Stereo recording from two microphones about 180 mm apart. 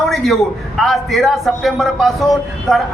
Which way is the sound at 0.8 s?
Centre (ahead or behind).